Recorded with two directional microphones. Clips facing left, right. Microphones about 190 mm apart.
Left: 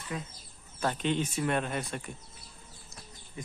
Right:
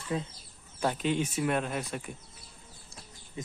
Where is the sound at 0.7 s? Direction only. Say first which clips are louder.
Right 1 dB; 10° right (ahead or behind).